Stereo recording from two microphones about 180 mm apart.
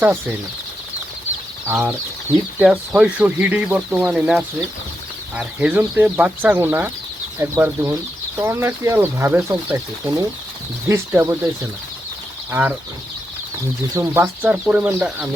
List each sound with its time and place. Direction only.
0.0 s speech: 10° right (ahead or behind)
2.6 s speech: 5° right (ahead or behind)
12.5 s speech: 10° right (ahead or behind)
13.9 s speech: 15° right (ahead or behind)